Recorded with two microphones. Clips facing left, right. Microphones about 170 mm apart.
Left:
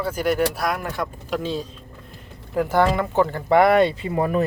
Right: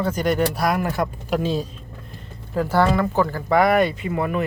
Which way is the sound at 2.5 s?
15° left (ahead or behind).